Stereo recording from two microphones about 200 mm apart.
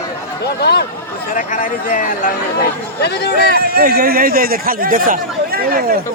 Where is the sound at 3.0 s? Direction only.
55° left (ahead or behind).